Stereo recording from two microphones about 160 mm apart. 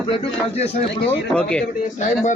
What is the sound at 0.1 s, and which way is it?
Speech, 40° left (ahead or behind).